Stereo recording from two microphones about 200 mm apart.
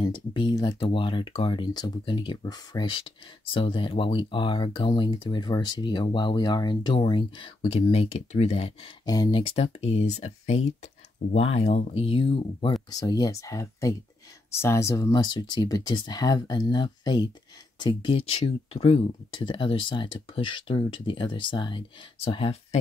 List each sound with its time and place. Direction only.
0.0 s speech: 25° left (ahead or behind)